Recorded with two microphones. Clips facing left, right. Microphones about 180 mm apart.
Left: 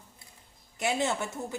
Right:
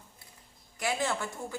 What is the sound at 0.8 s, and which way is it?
Speech, 25° left (ahead or behind).